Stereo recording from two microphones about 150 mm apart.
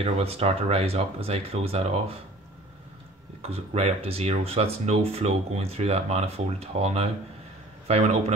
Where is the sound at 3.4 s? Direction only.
45° right (ahead or behind).